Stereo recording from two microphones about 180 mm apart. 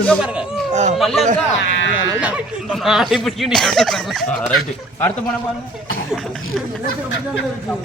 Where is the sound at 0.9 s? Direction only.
Centre (ahead or behind).